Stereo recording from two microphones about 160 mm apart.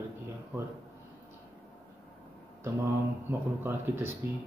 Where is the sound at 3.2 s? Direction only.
15° right (ahead or behind).